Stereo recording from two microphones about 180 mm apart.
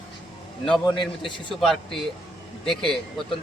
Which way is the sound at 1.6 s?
Centre (ahead or behind).